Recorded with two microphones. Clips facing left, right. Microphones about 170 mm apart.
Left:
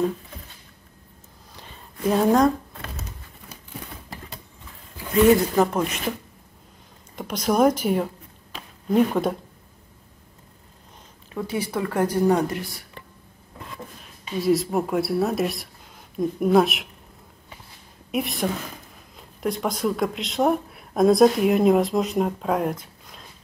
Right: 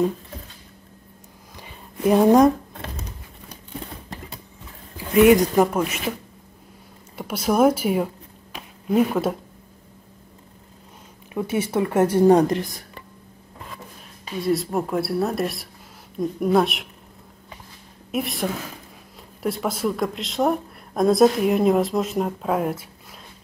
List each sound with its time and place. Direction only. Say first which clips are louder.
1.6 s a sound: right 4 dB; 15° right (ahead or behind)
5.1 s speech: right 2 dB; 15° right (ahead or behind)
7.2 s speech: right 1 dB; 5° right (ahead or behind)
8.5 s a sound: even; 5° right (ahead or behind)
11.3 s a woman's voice: right 4 dB; 25° right (ahead or behind)
14.4 s speech: left 1 dB; centre (ahead or behind)
18.1 s speech: even; centre (ahead or behind)